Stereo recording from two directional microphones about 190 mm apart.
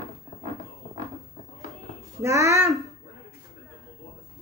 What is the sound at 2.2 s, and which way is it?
Speech, 15° right (ahead or behind).